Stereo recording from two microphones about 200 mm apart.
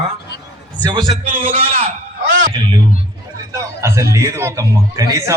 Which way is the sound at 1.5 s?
30° right (ahead or behind).